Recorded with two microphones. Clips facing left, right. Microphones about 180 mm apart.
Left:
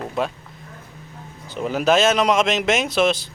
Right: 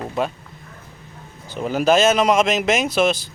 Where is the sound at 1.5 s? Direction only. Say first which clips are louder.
Right 1 dB; centre (ahead or behind).